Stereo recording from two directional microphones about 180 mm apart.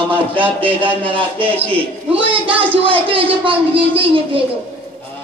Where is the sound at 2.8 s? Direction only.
30° right (ahead or behind).